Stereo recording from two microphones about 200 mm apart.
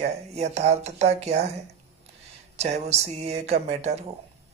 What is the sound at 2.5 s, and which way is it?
Speech, 35° right (ahead or behind).